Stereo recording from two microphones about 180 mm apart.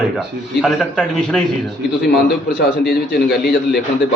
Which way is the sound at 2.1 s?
65° left (ahead or behind).